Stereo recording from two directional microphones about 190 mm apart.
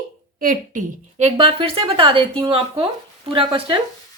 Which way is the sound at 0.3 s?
45° right (ahead or behind).